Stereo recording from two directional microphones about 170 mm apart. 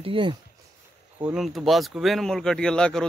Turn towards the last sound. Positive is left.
turn(degrees=5)  # may be behind; listen again after turning